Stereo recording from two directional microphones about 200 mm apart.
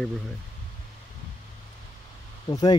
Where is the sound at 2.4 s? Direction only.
20° left (ahead or behind).